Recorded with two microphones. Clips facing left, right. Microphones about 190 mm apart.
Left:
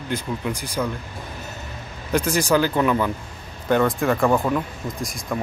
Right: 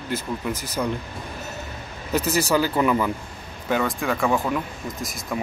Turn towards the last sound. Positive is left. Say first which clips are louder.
# left 2 dB
turn(degrees=0)  # may be behind; listen again after turning